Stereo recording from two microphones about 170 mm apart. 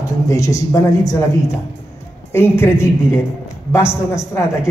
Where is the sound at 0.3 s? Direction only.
20° left (ahead or behind).